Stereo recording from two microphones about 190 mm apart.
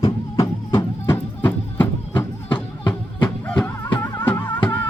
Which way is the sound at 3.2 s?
5° left (ahead or behind).